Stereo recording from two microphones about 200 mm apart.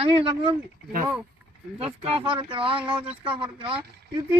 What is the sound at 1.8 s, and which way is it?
Speech, 30° right (ahead or behind).